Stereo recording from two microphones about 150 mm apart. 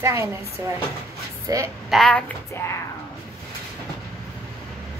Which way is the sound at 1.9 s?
5° left (ahead or behind).